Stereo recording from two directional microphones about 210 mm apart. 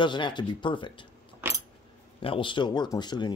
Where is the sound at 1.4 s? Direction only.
10° right (ahead or behind).